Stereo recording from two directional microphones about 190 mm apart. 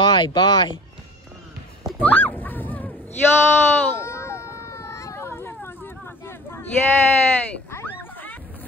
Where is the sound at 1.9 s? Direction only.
10° left (ahead or behind).